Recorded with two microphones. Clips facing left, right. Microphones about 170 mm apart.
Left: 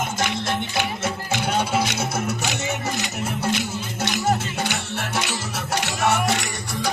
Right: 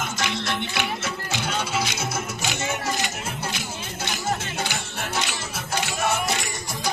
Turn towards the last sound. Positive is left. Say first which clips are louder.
# left 4 dB
turn(degrees=70)  # may be behind; listen again after turning